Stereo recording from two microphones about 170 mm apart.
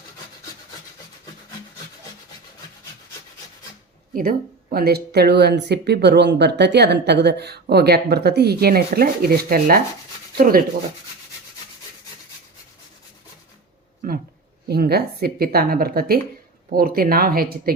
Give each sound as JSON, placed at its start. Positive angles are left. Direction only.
{"t": 4.1, "sound": "speech", "side_deg": -55}
{"t": 14.7, "sound": "a woman's voice", "side_deg": -70}